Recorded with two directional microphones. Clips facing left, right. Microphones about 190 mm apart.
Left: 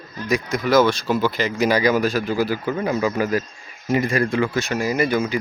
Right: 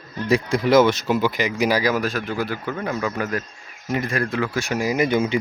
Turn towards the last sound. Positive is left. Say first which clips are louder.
# even
turn(degrees=-25)  # may be behind; listen again after turning